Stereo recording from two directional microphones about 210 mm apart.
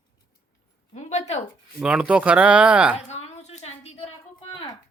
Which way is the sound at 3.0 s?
30° left (ahead or behind).